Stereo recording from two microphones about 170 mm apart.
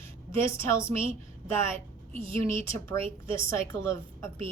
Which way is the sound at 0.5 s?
15° left (ahead or behind).